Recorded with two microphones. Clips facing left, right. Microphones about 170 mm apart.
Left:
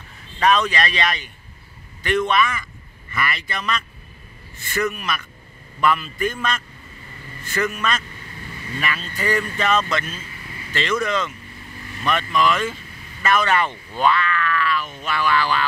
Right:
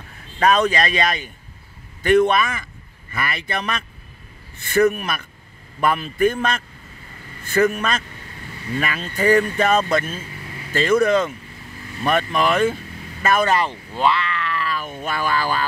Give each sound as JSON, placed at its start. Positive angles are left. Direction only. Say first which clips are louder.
{"t": 0.5, "sound": "speech", "louder": "right 2 dB", "side_deg": -45}
{"t": 13.6, "sound": "speech", "louder": "even", "side_deg": -30}
{"t": 15.0, "sound": "speech", "louder": "left 1 dB", "side_deg": -45}